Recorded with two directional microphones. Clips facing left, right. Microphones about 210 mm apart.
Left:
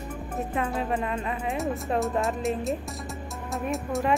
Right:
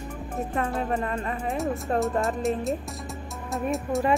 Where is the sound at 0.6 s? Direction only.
5° left (ahead or behind).